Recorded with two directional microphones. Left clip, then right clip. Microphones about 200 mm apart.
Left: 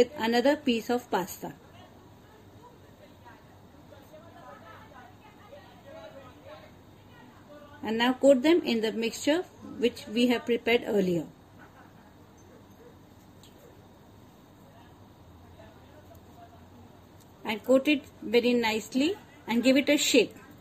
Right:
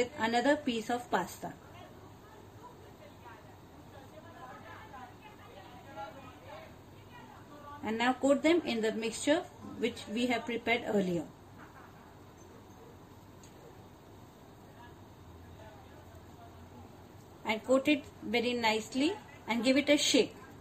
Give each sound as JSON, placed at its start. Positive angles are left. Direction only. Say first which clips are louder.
{"t": 0.0, "sound": "a woman's voice", "louder": "left 6 dB", "side_deg": 10}
{"t": 7.8, "sound": "a woman's voice", "louder": "left 7 dB", "side_deg": 10}
{"t": 17.4, "sound": "a woman's voice", "louder": "left 5 dB", "side_deg": 15}